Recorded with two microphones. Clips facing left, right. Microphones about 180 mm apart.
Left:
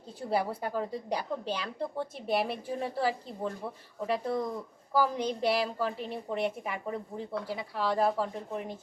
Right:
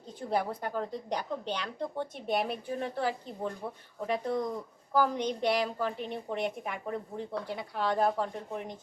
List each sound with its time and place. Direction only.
0.3 s a woman's voice: 5° left (ahead or behind)